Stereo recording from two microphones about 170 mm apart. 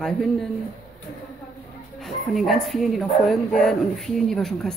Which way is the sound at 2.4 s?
Centre (ahead or behind).